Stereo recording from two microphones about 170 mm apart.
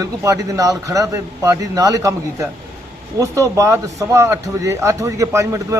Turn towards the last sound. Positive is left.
turn(degrees=-20)  # may be behind; listen again after turning